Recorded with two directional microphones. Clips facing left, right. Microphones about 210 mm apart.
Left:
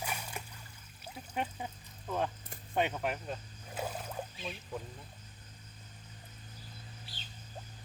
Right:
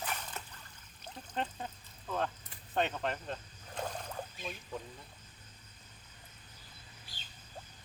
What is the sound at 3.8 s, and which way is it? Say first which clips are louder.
Rowboat: left 1 dB; 5° left (ahead or behind).